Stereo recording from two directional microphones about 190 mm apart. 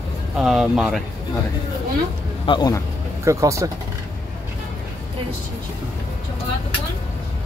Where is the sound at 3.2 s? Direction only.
15° right (ahead or behind).